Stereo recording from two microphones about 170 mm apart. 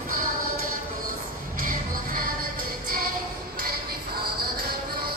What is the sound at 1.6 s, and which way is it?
Music, 55° right (ahead or behind).